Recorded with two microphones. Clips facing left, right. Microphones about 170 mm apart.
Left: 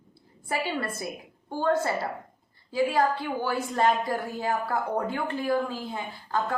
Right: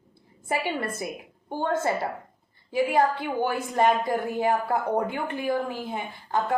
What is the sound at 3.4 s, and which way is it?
A woman's voice, 15° right (ahead or behind).